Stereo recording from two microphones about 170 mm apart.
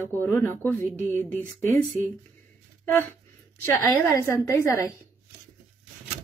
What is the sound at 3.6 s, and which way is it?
A woman's voice, 15° left (ahead or behind).